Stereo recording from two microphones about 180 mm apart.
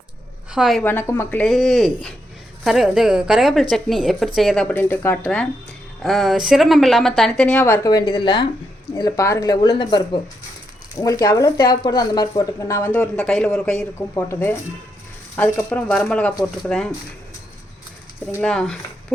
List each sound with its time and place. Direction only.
0.5 s a woman's voice: centre (ahead or behind)
0.9 s a woman's voice: 15° left (ahead or behind)
18.3 s a woman's voice: 10° left (ahead or behind)